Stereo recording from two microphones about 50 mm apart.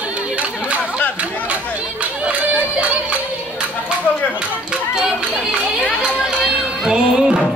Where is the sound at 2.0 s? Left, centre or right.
Right.